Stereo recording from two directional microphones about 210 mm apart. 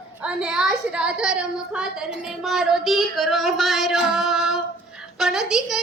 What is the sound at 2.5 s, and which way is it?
Female singing, centre (ahead or behind).